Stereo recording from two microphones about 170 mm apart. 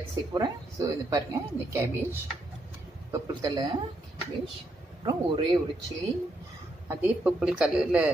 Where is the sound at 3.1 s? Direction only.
20° right (ahead or behind).